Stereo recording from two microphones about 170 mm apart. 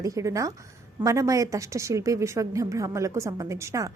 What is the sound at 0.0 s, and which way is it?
A woman's voice, 20° right (ahead or behind).